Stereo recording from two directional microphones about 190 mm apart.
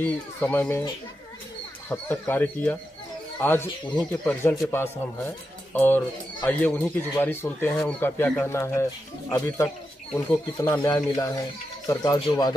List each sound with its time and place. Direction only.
0.0 s a man's voice: 10° left (ahead or behind)
1.9 s a man's voice: 10° left (ahead or behind)
10.1 s a man's voice: 15° left (ahead or behind)